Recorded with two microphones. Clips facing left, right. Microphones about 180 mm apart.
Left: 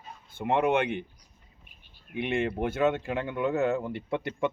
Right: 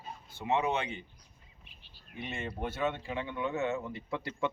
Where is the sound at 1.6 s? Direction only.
55° left (ahead or behind).